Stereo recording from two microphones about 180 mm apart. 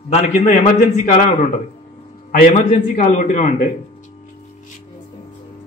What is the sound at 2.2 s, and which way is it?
A man's voice, 50° left (ahead or behind).